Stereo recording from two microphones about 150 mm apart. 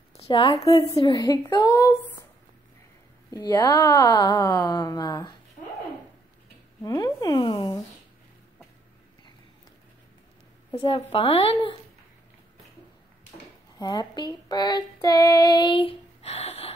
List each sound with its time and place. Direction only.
0.2 s a woman's voice: 35° left (ahead or behind); by 2.0 s 20° left (ahead or behind)
3.3 s a woman's voice: 25° left (ahead or behind)
6.8 s a sound: 25° left (ahead or behind)
11.1 s a woman's voice: 35° left (ahead or behind)
13.7 s female singing: 30° left (ahead or behind)